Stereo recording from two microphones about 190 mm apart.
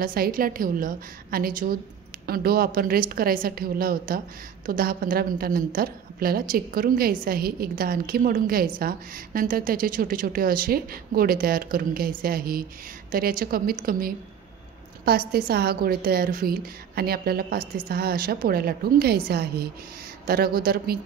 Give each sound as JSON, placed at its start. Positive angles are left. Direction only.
{"t": 0.0, "sound": "a woman's voice", "side_deg": -50}